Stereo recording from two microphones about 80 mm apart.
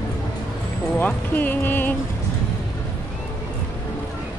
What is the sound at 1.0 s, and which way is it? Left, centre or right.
Music, left.